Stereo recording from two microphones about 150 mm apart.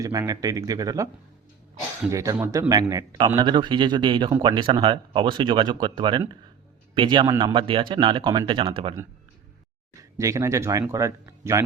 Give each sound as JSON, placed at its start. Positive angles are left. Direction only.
{"t": 0.0, "sound": "speech", "side_deg": -25}
{"t": 2.0, "sound": "speech", "side_deg": -20}
{"t": 10.0, "sound": "speech", "side_deg": -20}